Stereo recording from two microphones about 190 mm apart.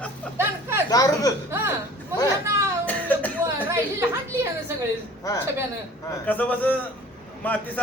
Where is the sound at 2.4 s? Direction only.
15° right (ahead or behind).